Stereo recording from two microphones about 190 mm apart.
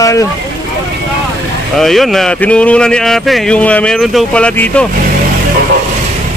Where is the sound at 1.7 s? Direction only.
Centre (ahead or behind).